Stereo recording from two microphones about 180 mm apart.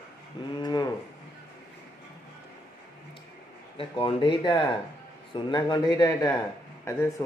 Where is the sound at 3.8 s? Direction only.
30° left (ahead or behind).